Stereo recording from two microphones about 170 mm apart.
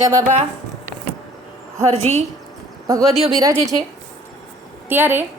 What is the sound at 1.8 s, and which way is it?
Speech, 40° right (ahead or behind).